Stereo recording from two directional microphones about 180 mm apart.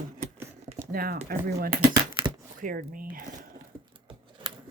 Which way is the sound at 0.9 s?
55° right (ahead or behind).